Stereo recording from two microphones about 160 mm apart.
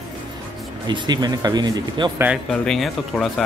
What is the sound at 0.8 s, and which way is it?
Speech, 25° right (ahead or behind).